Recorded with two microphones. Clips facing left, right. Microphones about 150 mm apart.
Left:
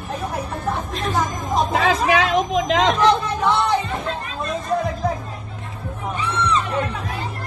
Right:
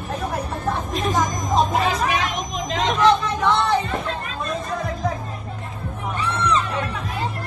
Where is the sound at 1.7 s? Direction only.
90° left.